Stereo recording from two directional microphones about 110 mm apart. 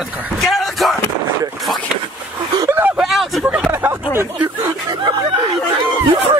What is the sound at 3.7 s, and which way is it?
Speech, 20° right (ahead or behind).